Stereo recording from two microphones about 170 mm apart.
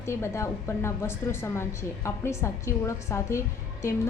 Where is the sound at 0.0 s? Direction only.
15° left (ahead or behind).